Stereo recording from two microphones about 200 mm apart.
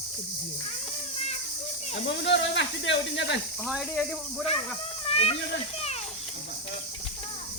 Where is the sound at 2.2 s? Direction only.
60° left (ahead or behind).